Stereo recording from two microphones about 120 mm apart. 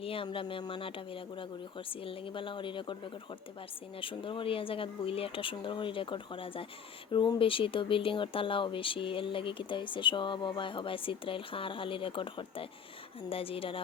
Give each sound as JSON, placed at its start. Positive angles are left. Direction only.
{"t": 0.0, "sound": "speech", "side_deg": 50}
{"t": 4.0, "sound": "speech", "side_deg": 45}